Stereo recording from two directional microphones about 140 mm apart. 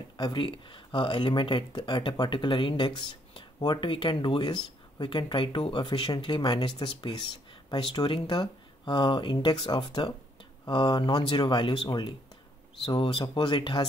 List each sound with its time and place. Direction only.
0.2 s speech: 35° left (ahead or behind)